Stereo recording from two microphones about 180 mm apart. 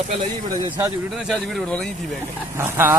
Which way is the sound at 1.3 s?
Centre (ahead or behind).